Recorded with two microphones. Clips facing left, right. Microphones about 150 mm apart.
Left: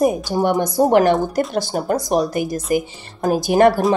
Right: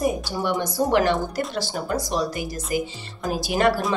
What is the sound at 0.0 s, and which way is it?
Speech, 45° left (ahead or behind).